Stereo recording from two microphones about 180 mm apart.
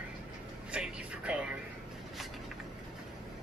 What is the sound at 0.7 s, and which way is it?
Music, 5° right (ahead or behind).